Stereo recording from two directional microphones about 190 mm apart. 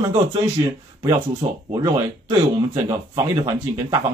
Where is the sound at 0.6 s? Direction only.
20° right (ahead or behind).